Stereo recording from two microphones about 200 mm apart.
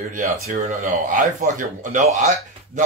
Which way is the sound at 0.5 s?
45° right (ahead or behind).